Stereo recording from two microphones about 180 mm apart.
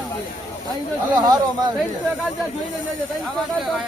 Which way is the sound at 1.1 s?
25° right (ahead or behind).